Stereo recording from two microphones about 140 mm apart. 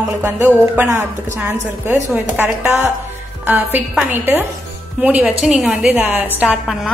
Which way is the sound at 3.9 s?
10° right (ahead or behind).